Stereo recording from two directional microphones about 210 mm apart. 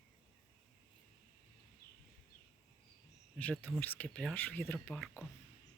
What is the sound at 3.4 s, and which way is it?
Speech, 5° left (ahead or behind).